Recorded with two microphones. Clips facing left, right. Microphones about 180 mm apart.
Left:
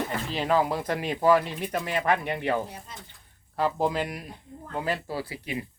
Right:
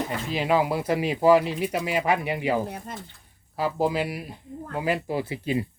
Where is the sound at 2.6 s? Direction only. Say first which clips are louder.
Right 7 dB; 60° right (ahead or behind).